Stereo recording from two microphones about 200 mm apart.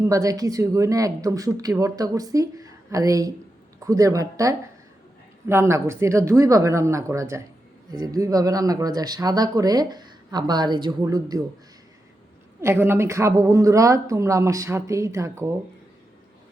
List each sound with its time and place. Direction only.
0.0 s a woman's voice: 15° right (ahead or behind)
12.6 s a woman's voice: 10° right (ahead or behind)